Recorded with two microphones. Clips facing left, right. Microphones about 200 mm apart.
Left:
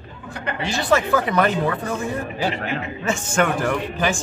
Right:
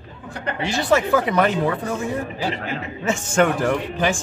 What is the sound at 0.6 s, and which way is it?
Speech, 15° right (ahead or behind).